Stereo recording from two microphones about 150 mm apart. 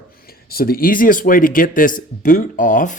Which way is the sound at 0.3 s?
90° left.